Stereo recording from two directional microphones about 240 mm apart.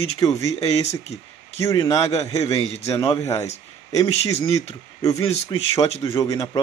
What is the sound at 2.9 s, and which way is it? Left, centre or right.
Speech, centre.